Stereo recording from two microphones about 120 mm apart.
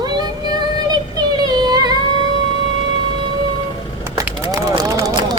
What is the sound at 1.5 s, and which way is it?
Music, 35° right (ahead or behind).